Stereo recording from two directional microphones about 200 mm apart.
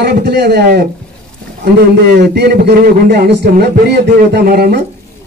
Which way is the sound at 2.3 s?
55° right (ahead or behind).